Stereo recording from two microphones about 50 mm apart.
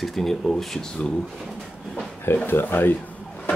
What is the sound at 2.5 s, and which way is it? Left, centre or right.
Speech, left.